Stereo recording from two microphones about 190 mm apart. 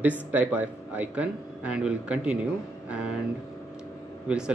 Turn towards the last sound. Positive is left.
turn(degrees=-5)  # may be behind; listen again after turning